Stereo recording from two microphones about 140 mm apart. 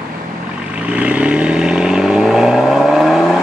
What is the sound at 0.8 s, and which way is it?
Vehicle, 10° right (ahead or behind).